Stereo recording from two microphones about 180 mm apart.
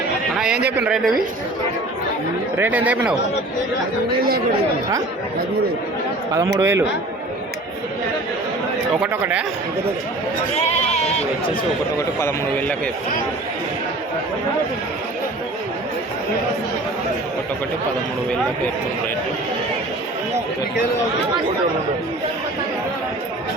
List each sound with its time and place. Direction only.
0.3 s a sound: 5° right (ahead or behind)
0.8 s a woman's voice: 5° right (ahead or behind)
2.6 s speech: 10° right (ahead or behind)
6.3 s speech: 15° right (ahead or behind)
9.0 s speech: 5° right (ahead or behind)
10.8 s sheep: 35° left (ahead or behind)
12.2 s a man's voice: 10° left (ahead or behind)